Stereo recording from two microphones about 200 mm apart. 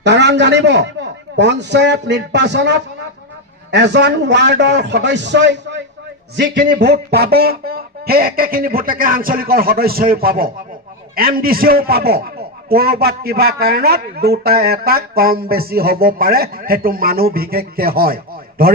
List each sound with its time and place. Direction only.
0.0 s a man's voice: 60° right (ahead or behind)